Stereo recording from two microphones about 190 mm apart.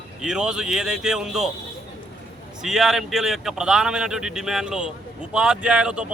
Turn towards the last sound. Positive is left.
turn(degrees=-5)  # may be behind; listen again after turning